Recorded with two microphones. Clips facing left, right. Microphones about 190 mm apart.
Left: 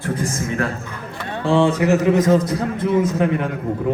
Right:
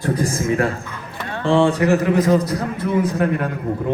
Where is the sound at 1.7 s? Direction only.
20° left (ahead or behind).